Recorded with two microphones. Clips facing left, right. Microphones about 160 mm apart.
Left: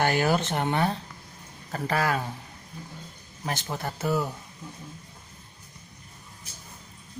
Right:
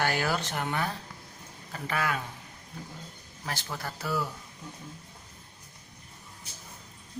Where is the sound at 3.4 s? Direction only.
20° left (ahead or behind).